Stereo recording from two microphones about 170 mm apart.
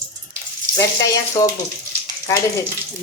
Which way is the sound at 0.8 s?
20° left (ahead or behind).